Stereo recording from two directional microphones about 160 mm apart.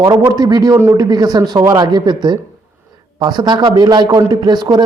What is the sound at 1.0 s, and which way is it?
A man's voice, 25° right (ahead or behind).